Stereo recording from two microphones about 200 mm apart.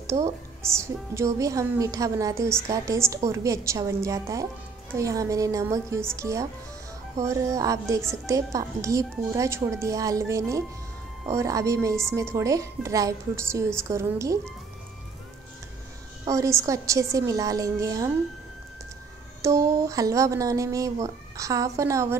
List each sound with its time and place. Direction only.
0.0 s a woman's voice: 15° right (ahead or behind)
16.3 s a woman's voice: 15° right (ahead or behind)
19.4 s a woman's voice: 15° right (ahead or behind)